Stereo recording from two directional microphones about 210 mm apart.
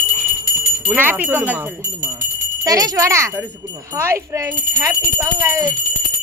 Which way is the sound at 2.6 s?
15° right (ahead or behind).